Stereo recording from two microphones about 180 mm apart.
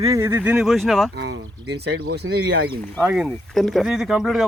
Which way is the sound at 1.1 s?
70° right (ahead or behind).